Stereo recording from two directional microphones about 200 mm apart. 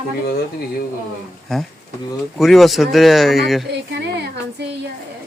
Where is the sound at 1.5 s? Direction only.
Centre (ahead or behind).